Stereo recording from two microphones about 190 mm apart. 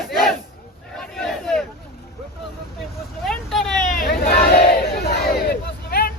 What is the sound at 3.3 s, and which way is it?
Vehicle, centre (ahead or behind).